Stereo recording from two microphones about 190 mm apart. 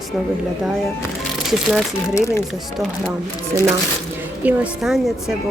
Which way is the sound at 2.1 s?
15° left (ahead or behind).